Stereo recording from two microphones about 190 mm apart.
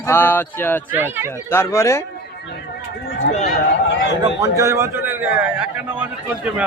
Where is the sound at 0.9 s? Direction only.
10° right (ahead or behind).